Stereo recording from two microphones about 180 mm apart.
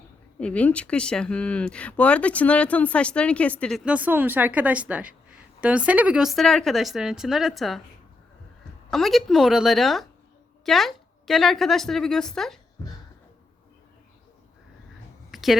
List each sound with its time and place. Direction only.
0.3 s speech: 5° left (ahead or behind)
8.9 s speech: centre (ahead or behind)
12.8 s music: 15° left (ahead or behind)
15.3 s a sound: centre (ahead or behind)